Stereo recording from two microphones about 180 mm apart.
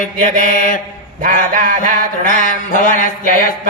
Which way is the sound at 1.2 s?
50° right (ahead or behind).